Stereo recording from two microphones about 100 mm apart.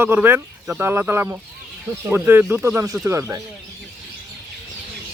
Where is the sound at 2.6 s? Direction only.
30° right (ahead or behind).